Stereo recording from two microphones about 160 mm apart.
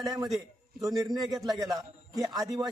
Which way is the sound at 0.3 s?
Centre (ahead or behind).